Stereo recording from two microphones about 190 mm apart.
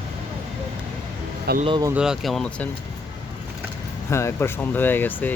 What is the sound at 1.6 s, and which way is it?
Speech, 25° right (ahead or behind).